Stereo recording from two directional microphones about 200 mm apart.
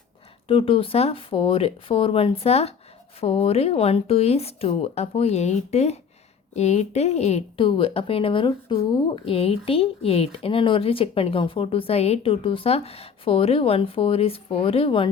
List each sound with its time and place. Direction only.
0.4 s speech: 25° left (ahead or behind)